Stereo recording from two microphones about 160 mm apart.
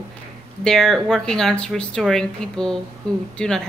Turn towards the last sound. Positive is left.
turn(degrees=5)  # may be behind; listen again after turning